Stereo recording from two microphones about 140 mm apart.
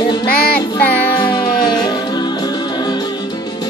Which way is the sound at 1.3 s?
30° left (ahead or behind).